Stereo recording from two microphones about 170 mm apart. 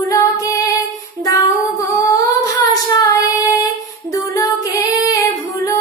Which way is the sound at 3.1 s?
20° left (ahead or behind).